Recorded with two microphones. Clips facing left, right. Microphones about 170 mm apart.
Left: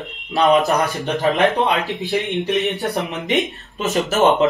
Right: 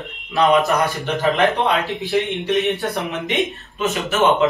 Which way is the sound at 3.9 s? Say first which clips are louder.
Left 3 dB; 40° left (ahead or behind).